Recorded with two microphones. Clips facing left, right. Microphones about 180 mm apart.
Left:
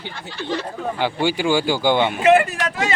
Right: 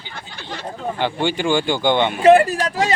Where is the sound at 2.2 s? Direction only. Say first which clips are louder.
Right 6 dB; 35° right (ahead or behind).